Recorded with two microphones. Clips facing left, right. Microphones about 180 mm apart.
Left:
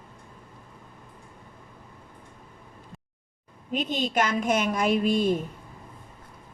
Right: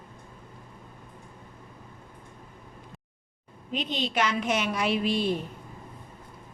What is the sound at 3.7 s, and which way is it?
A woman's voice, 45° left (ahead or behind).